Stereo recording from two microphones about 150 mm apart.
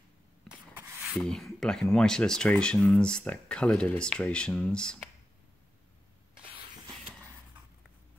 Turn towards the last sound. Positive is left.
turn(degrees=-35)  # may be behind; listen again after turning